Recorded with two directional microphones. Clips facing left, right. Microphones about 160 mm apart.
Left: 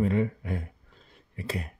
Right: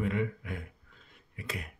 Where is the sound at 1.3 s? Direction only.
35° left (ahead or behind).